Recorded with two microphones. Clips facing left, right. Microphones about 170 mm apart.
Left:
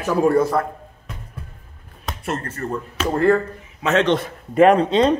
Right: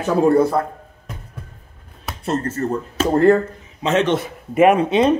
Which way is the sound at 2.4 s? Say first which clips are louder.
Right 5 dB; 25° right (ahead or behind).